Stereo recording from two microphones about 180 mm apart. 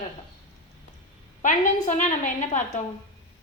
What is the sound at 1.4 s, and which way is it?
A woman's voice, 45° left (ahead or behind).